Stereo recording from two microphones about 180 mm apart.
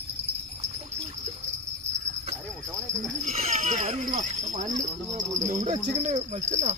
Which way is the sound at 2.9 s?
40° right (ahead or behind).